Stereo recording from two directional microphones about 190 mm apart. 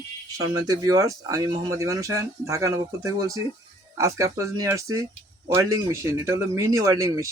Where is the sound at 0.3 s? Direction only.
20° right (ahead or behind).